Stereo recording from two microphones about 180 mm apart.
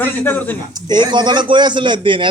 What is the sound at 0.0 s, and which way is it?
Speech, 10° left (ahead or behind).